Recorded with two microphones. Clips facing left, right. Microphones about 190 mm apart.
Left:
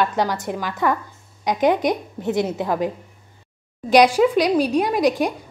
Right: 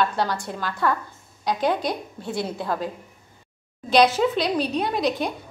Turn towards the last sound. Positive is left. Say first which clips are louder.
# left 5 dB
turn(degrees=10)  # may be behind; listen again after turning